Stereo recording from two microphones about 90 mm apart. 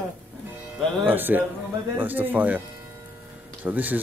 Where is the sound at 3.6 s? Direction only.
20° right (ahead or behind).